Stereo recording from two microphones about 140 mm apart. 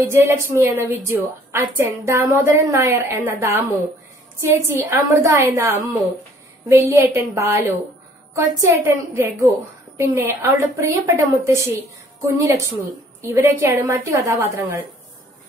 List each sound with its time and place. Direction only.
0.1 s a woman's voice: 20° right (ahead or behind)